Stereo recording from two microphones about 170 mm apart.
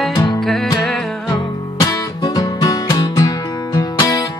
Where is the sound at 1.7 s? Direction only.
20° left (ahead or behind).